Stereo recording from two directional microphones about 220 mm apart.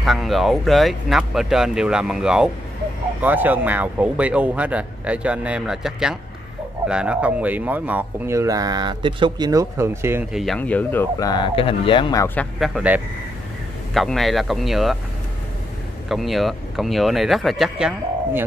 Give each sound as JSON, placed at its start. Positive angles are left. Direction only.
{"t": 0.0, "sound": "speech", "side_deg": 0}
{"t": 10.4, "sound": "speech", "side_deg": 5}
{"t": 12.5, "sound": "speech", "side_deg": 0}
{"t": 16.1, "sound": "speech", "side_deg": 0}